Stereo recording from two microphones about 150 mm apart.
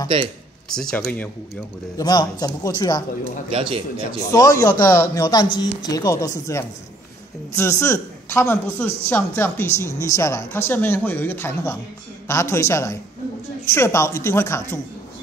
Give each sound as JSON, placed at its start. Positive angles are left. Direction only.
{"t": 0.7, "sound": "speech", "side_deg": 5}
{"t": 2.0, "sound": "speech", "side_deg": 25}
{"t": 3.4, "sound": "speech", "side_deg": -40}
{"t": 4.2, "sound": "speech", "side_deg": 25}